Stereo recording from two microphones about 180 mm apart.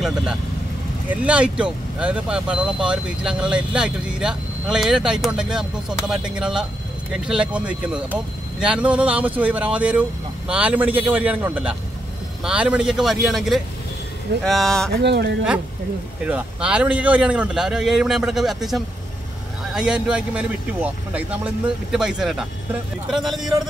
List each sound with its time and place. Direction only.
0.0 s speech: 5° right (ahead or behind)
14.9 s speech: 65° right (ahead or behind)
16.3 s speech: 5° right (ahead or behind)